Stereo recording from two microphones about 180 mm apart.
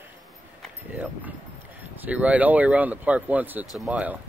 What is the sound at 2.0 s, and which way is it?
Speech, 10° right (ahead or behind).